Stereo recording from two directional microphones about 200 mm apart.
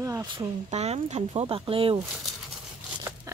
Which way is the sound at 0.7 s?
35° right (ahead or behind).